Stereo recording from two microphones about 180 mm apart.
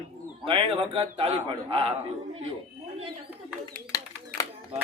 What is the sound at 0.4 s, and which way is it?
A man's voice, 30° right (ahead or behind).